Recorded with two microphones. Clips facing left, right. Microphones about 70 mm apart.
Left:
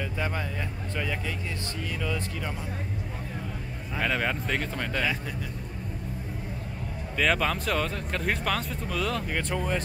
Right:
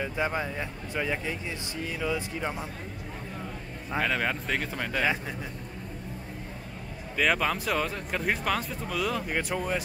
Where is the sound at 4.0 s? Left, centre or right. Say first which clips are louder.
Even; centre.